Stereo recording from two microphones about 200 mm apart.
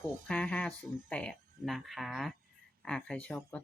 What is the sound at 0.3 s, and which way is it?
Speech, 5° left (ahead or behind).